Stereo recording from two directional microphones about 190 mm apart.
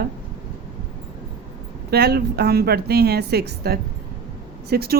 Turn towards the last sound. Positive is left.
turn(degrees=-55)  # may be behind; listen again after turning